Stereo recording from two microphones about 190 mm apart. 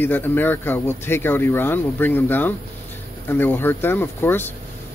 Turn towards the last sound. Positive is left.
turn(degrees=10)  # may be behind; listen again after turning